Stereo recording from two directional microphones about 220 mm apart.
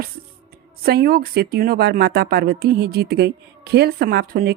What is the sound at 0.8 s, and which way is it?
Speech, 45° right (ahead or behind).